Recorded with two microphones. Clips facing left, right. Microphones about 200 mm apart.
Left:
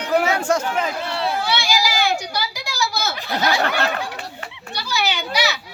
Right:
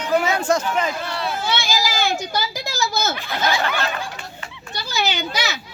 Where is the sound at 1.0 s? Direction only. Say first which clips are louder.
Left 3 dB; 25° left (ahead or behind).